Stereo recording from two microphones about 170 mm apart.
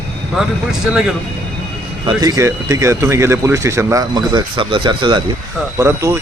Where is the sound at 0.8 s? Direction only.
5° right (ahead or behind).